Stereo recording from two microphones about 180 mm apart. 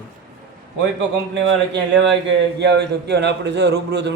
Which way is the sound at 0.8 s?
75° right (ahead or behind).